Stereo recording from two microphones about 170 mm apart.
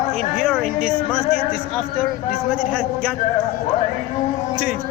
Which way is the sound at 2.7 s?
Centre (ahead or behind).